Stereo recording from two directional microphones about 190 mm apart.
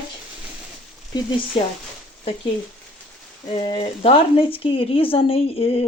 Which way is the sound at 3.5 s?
35° left (ahead or behind).